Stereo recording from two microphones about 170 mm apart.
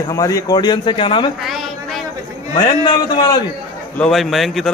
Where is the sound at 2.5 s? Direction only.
25° left (ahead or behind).